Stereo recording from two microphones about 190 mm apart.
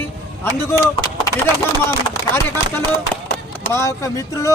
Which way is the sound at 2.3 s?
15° left (ahead or behind).